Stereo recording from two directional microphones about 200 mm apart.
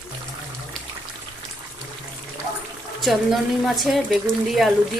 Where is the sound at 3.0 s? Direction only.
Centre (ahead or behind).